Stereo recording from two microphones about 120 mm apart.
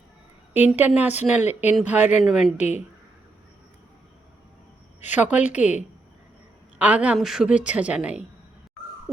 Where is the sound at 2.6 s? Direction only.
70° left (ahead or behind).